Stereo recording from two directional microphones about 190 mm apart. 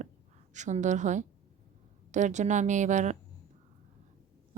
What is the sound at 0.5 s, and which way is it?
A woman's voice, 40° right (ahead or behind).